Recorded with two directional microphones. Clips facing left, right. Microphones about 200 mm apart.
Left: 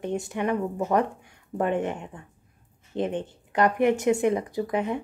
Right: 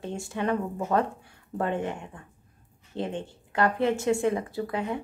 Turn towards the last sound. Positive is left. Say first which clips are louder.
# left 3 dB
turn(degrees=20)  # may be behind; listen again after turning